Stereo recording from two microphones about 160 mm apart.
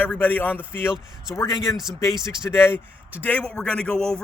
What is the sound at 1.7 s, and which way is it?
Speech, 20° left (ahead or behind).